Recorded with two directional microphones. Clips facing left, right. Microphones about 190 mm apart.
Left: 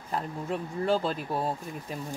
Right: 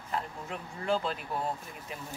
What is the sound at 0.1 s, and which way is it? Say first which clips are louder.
Speech: left 5 dB; 35° left (ahead or behind).